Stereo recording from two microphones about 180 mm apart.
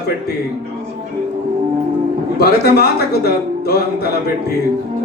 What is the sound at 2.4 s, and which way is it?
A man's voice, 60° left (ahead or behind).